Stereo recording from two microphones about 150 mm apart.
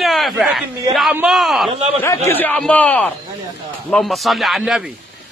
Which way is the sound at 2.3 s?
10° left (ahead or behind).